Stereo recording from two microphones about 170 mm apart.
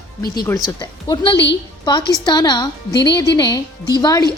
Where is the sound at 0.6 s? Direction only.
25° left (ahead or behind).